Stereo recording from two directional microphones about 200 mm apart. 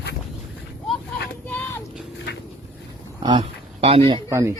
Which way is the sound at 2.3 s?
55° left (ahead or behind).